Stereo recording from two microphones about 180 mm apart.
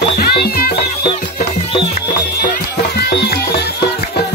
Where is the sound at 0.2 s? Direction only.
60° left (ahead or behind).